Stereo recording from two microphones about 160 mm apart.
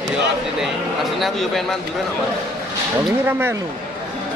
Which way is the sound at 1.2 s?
Centre (ahead or behind).